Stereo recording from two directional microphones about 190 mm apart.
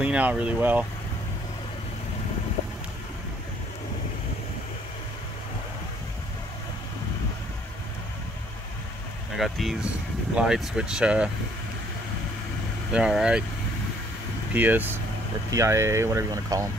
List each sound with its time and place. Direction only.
0.0 s speech: 5° right (ahead or behind)
9.4 s speech: centre (ahead or behind)
12.9 s speech: 5° right (ahead or behind)
14.5 s speech: 10° right (ahead or behind)